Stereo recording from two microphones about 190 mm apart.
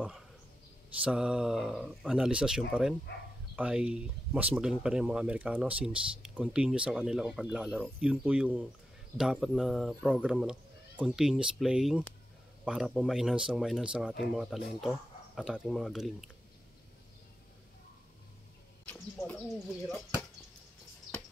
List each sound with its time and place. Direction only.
1.0 s speech: 5° right (ahead or behind)
3.1 s speech: 65° left (ahead or behind)
3.5 s speech: 5° right (ahead or behind)
18.9 s speech: 5° left (ahead or behind)